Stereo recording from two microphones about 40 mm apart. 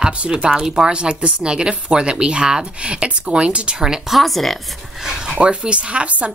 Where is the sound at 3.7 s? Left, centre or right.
Centre.